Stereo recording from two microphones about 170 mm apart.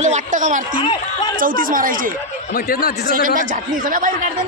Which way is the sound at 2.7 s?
60° left (ahead or behind).